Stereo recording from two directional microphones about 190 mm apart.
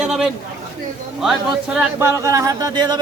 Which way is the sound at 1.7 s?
10° right (ahead or behind).